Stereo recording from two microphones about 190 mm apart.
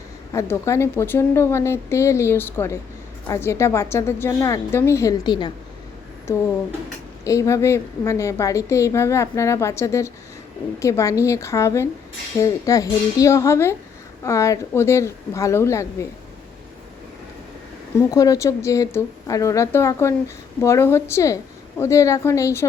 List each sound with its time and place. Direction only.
0.3 s a woman's voice: 15° left (ahead or behind)
7.3 s a woman's voice: 15° left (ahead or behind)
18.1 s a woman's voice: 20° left (ahead or behind)